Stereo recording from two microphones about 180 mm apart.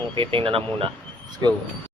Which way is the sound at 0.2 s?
30° right (ahead or behind).